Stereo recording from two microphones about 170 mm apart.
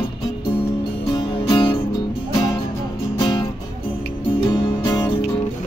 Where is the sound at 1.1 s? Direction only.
30° left (ahead or behind).